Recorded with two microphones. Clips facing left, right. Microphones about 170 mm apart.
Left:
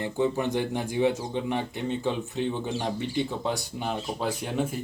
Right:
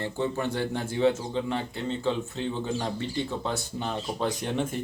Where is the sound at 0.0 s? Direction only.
15° left (ahead or behind).